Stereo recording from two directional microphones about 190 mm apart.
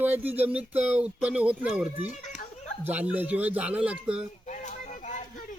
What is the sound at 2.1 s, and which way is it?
Children playing, 40° left (ahead or behind).